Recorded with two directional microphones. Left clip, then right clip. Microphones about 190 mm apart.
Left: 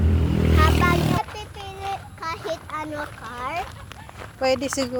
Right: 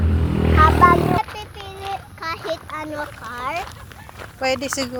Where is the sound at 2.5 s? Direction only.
10° right (ahead or behind).